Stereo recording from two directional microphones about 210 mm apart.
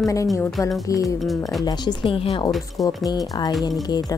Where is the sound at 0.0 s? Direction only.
15° left (ahead or behind).